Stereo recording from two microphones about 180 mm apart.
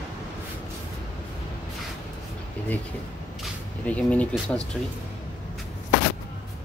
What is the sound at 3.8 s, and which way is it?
Speech, 10° left (ahead or behind).